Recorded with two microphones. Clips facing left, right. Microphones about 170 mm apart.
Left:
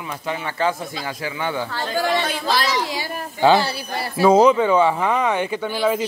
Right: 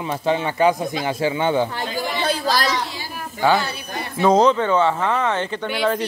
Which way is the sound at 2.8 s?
90° left.